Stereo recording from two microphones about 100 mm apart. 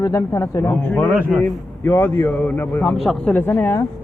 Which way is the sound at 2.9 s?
Centre (ahead or behind).